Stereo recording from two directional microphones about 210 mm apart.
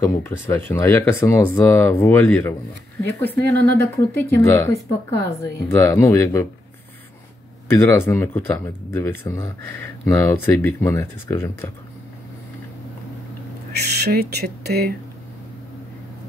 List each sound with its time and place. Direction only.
0.0 s speech: 10° left (ahead or behind)
7.7 s speech: 10° left (ahead or behind)
13.7 s speech: 50° right (ahead or behind)